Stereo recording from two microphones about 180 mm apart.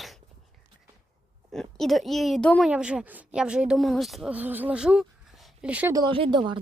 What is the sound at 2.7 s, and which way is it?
Speech, 5° right (ahead or behind).